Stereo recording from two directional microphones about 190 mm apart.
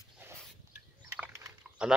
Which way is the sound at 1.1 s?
15° right (ahead or behind).